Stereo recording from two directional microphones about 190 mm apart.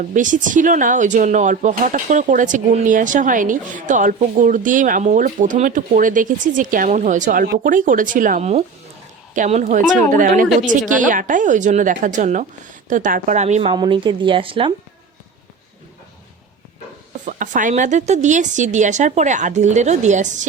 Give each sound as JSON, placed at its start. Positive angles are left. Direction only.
{"t": 0.0, "sound": "a woman's voice", "side_deg": -40}
{"t": 17.2, "sound": "a woman's voice", "side_deg": -40}